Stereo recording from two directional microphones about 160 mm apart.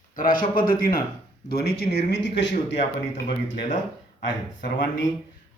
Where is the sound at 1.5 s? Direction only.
85° left.